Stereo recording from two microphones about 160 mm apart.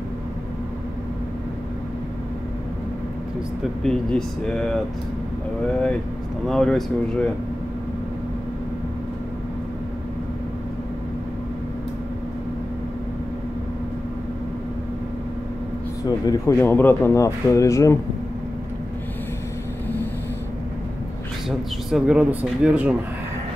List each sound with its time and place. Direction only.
3.8 s speech: 5° left (ahead or behind)
6.4 s speech: 5° left (ahead or behind)
16.3 s speech: 15° left (ahead or behind)
21.5 s speech: 5° right (ahead or behind)